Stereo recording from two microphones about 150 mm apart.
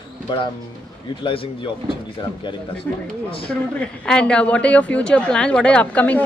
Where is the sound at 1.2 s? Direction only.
35° left (ahead or behind).